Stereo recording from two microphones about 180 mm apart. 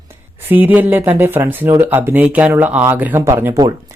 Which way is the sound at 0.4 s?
10° right (ahead or behind).